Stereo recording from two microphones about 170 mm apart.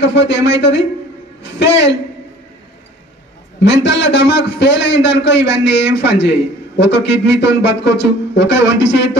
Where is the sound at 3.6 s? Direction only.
90° left.